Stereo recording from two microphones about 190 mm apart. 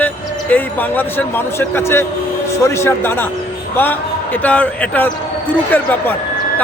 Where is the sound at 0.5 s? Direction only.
10° left (ahead or behind).